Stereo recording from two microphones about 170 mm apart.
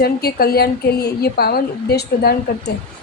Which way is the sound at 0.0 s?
65° left (ahead or behind).